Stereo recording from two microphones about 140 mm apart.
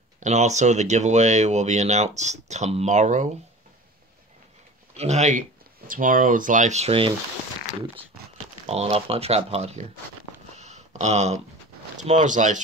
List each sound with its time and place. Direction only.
0.2 s speech: 55° right (ahead or behind)
4.9 s speech: 55° right (ahead or behind)
5.9 s speech: 70° right (ahead or behind); by 7.2 s 40° right (ahead or behind)
8.6 s speech: 45° right (ahead or behind)
10.5 s a sound: 55° right (ahead or behind)
12.0 s speech: 60° right (ahead or behind)